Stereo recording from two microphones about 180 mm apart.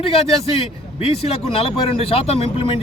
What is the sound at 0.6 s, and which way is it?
Speech, 35° left (ahead or behind).